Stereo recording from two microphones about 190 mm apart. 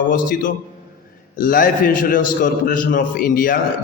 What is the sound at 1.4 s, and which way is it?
A man's voice, 45° left (ahead or behind).